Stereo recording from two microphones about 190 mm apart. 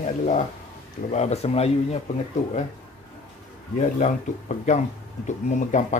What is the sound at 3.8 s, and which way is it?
Speech, 40° left (ahead or behind).